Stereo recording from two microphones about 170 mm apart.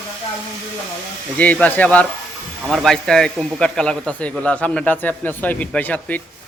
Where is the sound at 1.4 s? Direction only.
10° left (ahead or behind).